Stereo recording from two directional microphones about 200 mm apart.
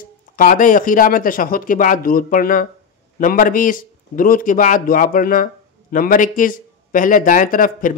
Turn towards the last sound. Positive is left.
turn(degrees=45)  # may be behind; listen again after turning